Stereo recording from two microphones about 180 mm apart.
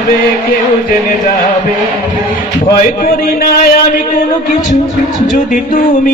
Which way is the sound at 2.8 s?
50° left (ahead or behind).